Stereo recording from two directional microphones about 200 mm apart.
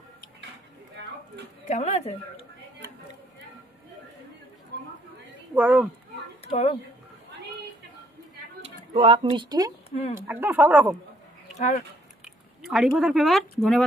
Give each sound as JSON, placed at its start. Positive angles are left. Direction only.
{"t": 1.0, "sound": "a sound", "side_deg": -65}
{"t": 1.7, "sound": "speech", "side_deg": 35}
{"t": 4.7, "sound": "a sound", "side_deg": -55}
{"t": 5.5, "sound": "speech", "side_deg": -5}
{"t": 6.4, "sound": "speech", "side_deg": 30}
{"t": 8.6, "sound": "speech", "side_deg": -30}
{"t": 9.8, "sound": "speech", "side_deg": 30}
{"t": 10.1, "sound": "speech", "side_deg": -10}
{"t": 11.5, "sound": "speech", "side_deg": 35}
{"t": 12.6, "sound": "speech", "side_deg": 0}